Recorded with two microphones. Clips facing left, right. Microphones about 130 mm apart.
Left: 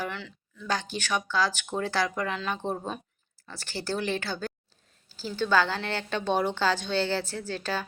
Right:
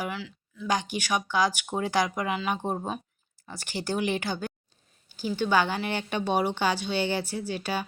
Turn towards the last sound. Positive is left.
turn(degrees=-10)  # may be behind; listen again after turning